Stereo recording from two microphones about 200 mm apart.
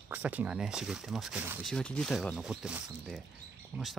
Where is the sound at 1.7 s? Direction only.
5° left (ahead or behind).